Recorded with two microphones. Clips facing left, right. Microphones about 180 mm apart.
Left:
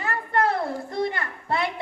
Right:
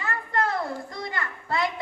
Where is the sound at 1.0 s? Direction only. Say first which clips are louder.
Left 3 dB; 30° left (ahead or behind).